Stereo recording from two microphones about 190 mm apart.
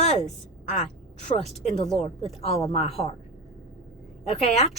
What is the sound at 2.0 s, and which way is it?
Speech, 35° left (ahead or behind).